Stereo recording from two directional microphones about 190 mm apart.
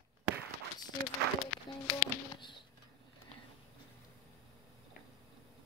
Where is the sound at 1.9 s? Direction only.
25° left (ahead or behind).